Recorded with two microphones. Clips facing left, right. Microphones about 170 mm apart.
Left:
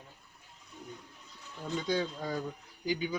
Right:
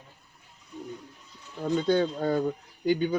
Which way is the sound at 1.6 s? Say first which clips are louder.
Right 8 dB; 60° right (ahead or behind).